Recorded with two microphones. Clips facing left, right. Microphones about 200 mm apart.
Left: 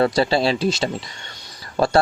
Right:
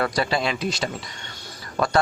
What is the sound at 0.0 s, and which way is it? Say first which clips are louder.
A man's voice: left 6 dB; 30° left (ahead or behind).